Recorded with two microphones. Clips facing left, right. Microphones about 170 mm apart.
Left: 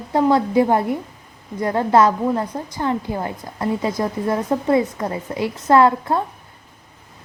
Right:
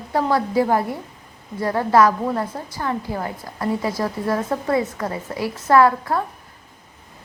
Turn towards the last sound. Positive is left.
turn(degrees=25)  # may be behind; listen again after turning